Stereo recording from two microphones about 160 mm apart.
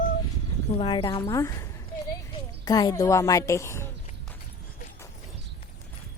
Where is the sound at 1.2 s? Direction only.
20° left (ahead or behind).